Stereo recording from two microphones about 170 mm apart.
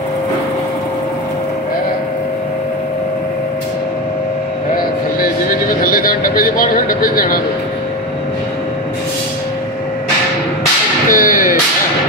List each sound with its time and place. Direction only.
4.7 s vehicle: 55° left (ahead or behind)
11.1 s whip: 55° left (ahead or behind)